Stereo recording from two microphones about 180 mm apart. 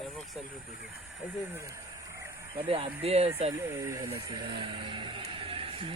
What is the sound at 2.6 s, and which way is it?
Speech, 35° right (ahead or behind).